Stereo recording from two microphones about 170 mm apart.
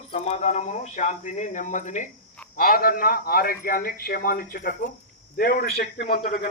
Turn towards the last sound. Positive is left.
turn(degrees=60)  # may be behind; listen again after turning